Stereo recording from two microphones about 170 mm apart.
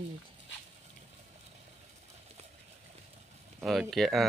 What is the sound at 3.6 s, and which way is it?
Speech, centre (ahead or behind).